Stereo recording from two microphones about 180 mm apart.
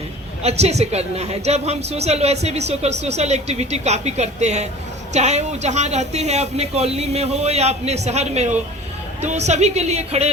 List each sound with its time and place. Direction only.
0.4 s a woman's voice: 35° right (ahead or behind)